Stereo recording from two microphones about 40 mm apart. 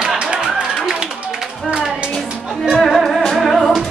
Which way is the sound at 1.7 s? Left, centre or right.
Left.